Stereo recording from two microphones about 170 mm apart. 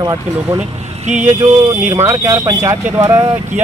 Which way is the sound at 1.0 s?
45° right (ahead or behind).